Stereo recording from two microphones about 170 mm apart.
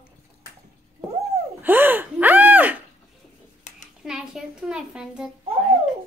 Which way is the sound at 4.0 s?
5° right (ahead or behind).